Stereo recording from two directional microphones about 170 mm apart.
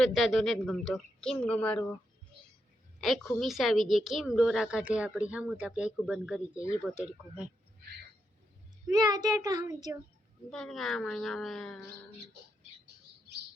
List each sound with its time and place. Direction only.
0.0 s a woman's voice: centre (ahead or behind)
3.0 s a woman's voice: centre (ahead or behind)
8.9 s a child's voice: 20° right (ahead or behind)
10.5 s a woman's voice: centre (ahead or behind)